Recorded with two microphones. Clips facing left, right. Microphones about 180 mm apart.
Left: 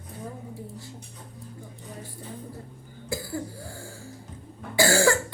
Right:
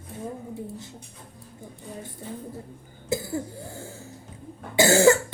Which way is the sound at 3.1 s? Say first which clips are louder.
Right 4 dB; 20° right (ahead or behind).